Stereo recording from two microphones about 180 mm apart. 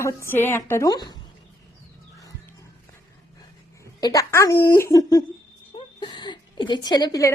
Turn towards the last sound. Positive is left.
turn(degrees=20)  # may be behind; listen again after turning